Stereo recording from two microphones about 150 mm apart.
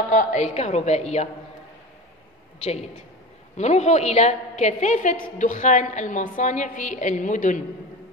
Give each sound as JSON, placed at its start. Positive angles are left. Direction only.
{"t": 0.1, "sound": "a woman's voice", "side_deg": 55}
{"t": 3.5, "sound": "a woman's voice", "side_deg": 50}